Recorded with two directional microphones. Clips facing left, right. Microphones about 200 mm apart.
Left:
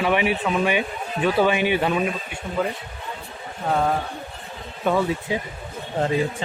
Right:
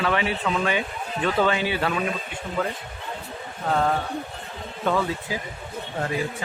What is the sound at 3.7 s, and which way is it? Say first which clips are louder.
Speech: left 1 dB; 5° left (ahead or behind).